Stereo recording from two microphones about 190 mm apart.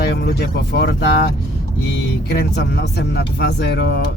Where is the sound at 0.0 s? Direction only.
60° left (ahead or behind).